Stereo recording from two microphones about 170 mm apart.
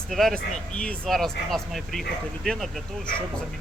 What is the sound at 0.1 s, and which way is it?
Speech, centre (ahead or behind).